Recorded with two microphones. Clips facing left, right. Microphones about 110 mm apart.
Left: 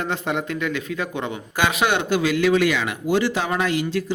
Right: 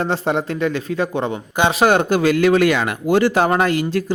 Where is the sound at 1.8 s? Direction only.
40° right (ahead or behind).